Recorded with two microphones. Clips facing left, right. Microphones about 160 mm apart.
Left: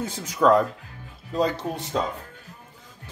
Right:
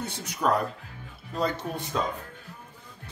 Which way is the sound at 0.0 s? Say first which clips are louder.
Left 7 dB; 90° left.